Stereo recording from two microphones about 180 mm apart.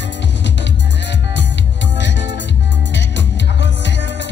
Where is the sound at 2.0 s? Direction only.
80° left.